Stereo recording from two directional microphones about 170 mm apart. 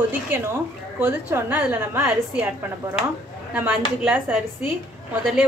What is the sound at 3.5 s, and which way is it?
Speech, 5° right (ahead or behind).